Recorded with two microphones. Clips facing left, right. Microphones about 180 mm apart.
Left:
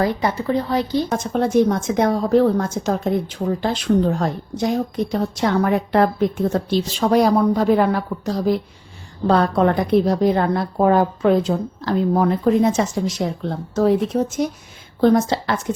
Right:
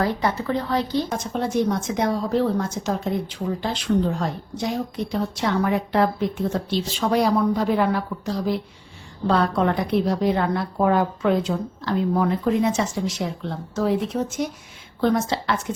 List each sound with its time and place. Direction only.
0.0 s speech: 15° left (ahead or behind)
1.1 s a woman's voice: 50° left (ahead or behind)